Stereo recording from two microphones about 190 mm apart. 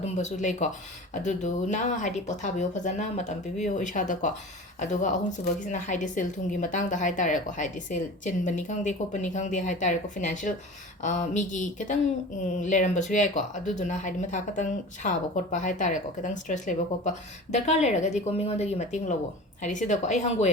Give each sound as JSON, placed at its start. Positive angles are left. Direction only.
{"t": 0.0, "sound": "speech", "side_deg": 40}
{"t": 5.7, "sound": "speech", "side_deg": 40}